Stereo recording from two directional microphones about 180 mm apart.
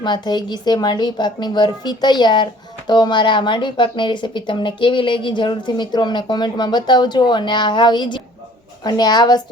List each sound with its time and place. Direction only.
0.0 s a woman's voice: 25° left (ahead or behind)